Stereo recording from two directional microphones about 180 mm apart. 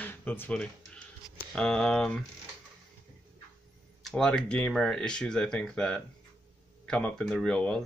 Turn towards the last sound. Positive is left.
turn(degrees=5)  # may be behind; listen again after turning